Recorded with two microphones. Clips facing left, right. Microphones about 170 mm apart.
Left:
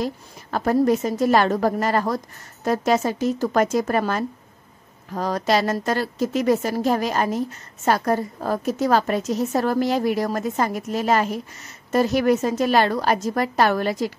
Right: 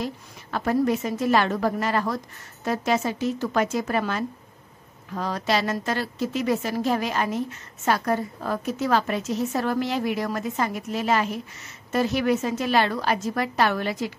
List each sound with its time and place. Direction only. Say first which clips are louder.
0.0 s a woman's voice: left 4 dB; 40° left (ahead or behind)